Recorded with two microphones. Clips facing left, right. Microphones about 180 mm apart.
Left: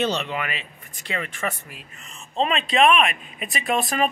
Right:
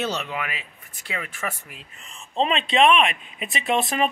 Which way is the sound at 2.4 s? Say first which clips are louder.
Even; 30° right (ahead or behind).